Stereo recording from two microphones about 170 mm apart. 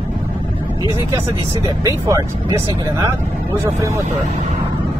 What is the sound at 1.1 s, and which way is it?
Speech, 20° right (ahead or behind).